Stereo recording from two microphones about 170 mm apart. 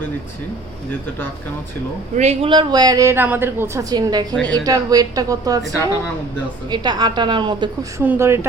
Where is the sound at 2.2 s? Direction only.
40° right (ahead or behind).